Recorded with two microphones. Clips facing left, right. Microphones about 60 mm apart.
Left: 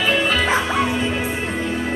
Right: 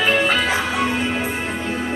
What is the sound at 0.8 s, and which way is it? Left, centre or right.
Music, right.